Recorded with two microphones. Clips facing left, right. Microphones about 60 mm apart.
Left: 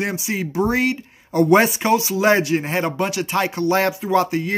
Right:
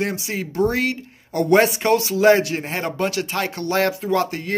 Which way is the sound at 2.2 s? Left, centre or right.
Left.